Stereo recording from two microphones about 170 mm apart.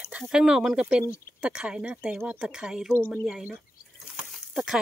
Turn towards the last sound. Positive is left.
turn(degrees=0)  # may be behind; listen again after turning